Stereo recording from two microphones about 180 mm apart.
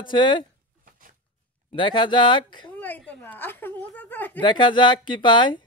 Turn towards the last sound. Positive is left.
turn(degrees=25)  # may be behind; listen again after turning